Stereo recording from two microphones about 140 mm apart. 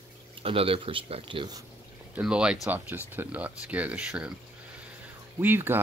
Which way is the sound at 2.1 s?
5° right (ahead or behind).